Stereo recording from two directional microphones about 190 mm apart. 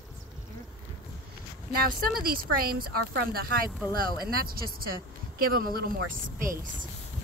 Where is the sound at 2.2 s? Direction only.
50° right (ahead or behind).